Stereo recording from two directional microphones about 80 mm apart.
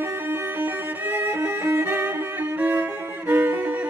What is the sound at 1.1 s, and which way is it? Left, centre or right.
Violin, right.